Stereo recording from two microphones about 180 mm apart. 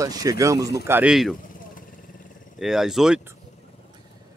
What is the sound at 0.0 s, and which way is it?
Speech, 20° right (ahead or behind).